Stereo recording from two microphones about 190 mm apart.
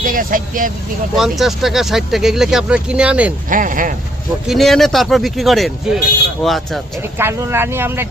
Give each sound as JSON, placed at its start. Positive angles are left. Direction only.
{"t": 0.0, "sound": "speech", "side_deg": -45}
{"t": 1.1, "sound": "speech", "side_deg": 0}
{"t": 3.5, "sound": "speech", "side_deg": -45}
{"t": 4.4, "sound": "speech", "side_deg": 0}
{"t": 7.2, "sound": "speech", "side_deg": -10}